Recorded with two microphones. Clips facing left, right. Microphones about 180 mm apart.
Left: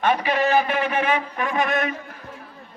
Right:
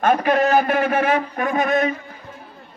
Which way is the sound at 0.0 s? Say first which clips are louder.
Right 4 dB; 50° right (ahead or behind).